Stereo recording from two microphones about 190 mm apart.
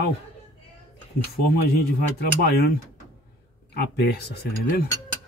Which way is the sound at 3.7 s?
60° left (ahead or behind).